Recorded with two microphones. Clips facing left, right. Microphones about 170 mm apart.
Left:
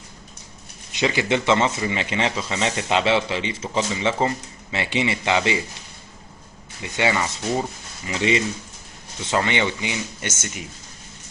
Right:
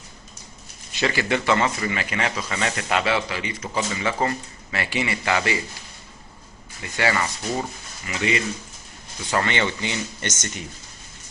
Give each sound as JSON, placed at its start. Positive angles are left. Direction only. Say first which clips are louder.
{"t": 0.9, "sound": "speech", "louder": "left 2 dB", "side_deg": 20}
{"t": 6.8, "sound": "speech", "louder": "left 1 dB", "side_deg": 20}